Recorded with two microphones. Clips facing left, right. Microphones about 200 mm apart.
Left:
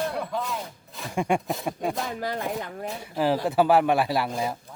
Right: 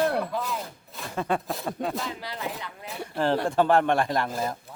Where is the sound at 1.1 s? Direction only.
15° left (ahead or behind).